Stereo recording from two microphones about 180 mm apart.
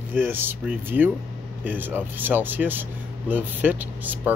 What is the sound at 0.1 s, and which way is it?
Speech, 10° right (ahead or behind).